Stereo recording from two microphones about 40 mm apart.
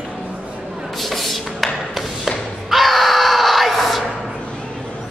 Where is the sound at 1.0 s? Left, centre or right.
Centre.